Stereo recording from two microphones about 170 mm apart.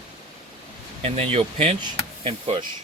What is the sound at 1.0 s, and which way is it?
Speech, 35° right (ahead or behind).